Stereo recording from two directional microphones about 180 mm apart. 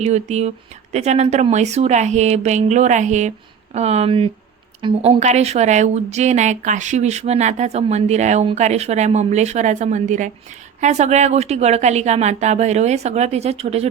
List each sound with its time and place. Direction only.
0.0 s a woman's voice: 40° right (ahead or behind)